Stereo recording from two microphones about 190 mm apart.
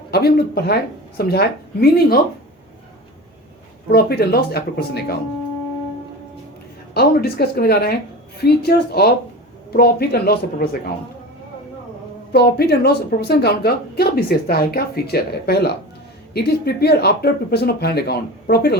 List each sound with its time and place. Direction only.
0.1 s a woman's voice: 55° left (ahead or behind)
3.9 s a woman's voice: 55° left (ahead or behind)
6.9 s a woman's voice: 55° left (ahead or behind)
12.3 s a woman's voice: 55° left (ahead or behind)